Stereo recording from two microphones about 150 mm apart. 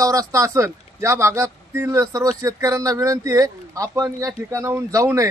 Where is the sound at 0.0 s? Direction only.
20° right (ahead or behind).